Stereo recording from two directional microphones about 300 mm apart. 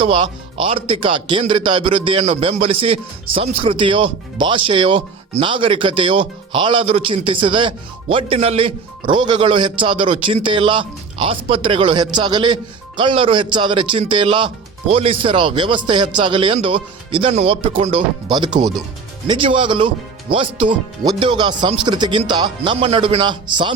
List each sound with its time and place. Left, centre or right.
0.0 s speech: centre